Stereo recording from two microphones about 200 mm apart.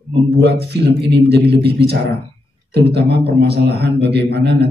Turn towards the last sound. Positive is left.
turn(degrees=-55)  # may be behind; listen again after turning